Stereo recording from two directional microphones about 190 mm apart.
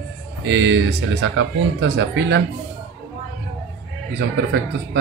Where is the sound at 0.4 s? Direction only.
70° right (ahead or behind).